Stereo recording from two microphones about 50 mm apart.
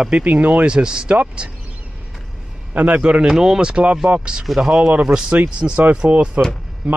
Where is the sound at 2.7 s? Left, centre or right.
Right.